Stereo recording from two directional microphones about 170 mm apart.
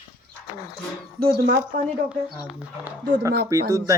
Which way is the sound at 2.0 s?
5° right (ahead or behind).